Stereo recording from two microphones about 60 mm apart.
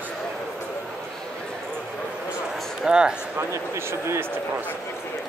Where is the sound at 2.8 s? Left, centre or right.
Centre.